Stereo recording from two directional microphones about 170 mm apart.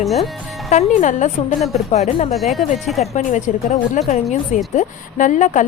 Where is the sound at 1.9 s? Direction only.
40° left (ahead or behind).